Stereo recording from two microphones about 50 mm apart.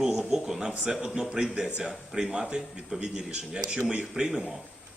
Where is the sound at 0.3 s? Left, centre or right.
Centre.